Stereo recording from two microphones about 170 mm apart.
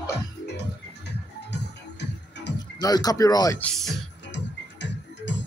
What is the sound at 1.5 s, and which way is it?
Music, 90° left.